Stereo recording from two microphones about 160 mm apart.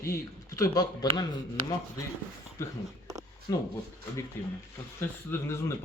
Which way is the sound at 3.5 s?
20° left (ahead or behind).